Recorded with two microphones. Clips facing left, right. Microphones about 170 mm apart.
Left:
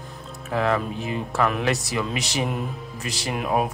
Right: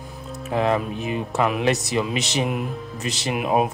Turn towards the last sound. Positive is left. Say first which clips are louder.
# right 3 dB
turn(degrees=-20)  # may be behind; listen again after turning